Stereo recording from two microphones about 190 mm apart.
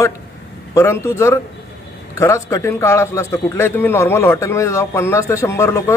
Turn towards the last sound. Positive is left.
turn(degrees=15)  # may be behind; listen again after turning